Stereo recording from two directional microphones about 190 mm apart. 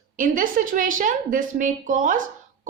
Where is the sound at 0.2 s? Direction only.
45° right (ahead or behind).